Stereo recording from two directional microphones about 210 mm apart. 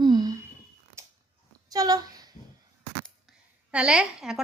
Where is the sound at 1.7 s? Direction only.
15° right (ahead or behind).